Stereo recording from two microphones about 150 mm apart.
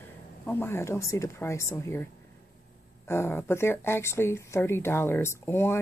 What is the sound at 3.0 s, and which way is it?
Speech, 15° left (ahead or behind).